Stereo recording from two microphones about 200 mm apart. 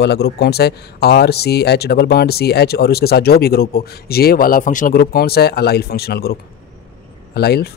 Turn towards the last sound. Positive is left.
turn(degrees=55)  # may be behind; listen again after turning